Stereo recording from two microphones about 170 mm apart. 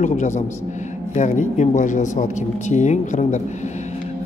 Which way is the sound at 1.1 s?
45° left (ahead or behind).